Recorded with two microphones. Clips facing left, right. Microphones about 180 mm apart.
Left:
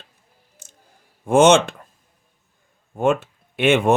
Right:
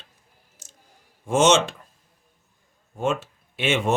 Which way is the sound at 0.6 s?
55° left (ahead or behind).